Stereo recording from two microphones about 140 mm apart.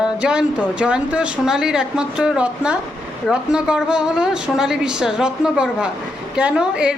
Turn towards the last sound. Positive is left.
turn(degrees=-5)  # may be behind; listen again after turning